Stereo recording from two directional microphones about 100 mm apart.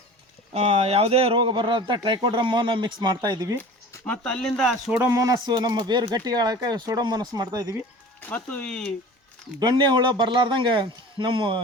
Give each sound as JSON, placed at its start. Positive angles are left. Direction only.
{"t": 0.5, "sound": "speech", "side_deg": -90}
{"t": 1.4, "sound": "speech", "side_deg": -55}
{"t": 3.6, "sound": "a sound", "side_deg": 20}
{"t": 4.2, "sound": "speech", "side_deg": 5}
{"t": 5.0, "sound": "speech", "side_deg": -35}
{"t": 8.2, "sound": "speech", "side_deg": 15}
{"t": 9.6, "sound": "speech", "side_deg": -45}